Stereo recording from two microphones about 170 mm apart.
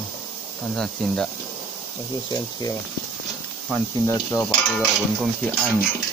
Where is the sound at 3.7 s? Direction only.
20° left (ahead or behind).